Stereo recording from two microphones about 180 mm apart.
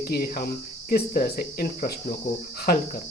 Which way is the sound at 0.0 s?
55° left (ahead or behind).